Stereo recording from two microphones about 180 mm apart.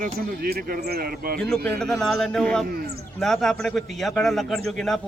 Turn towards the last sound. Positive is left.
turn(degrees=0)  # may be behind; listen again after turning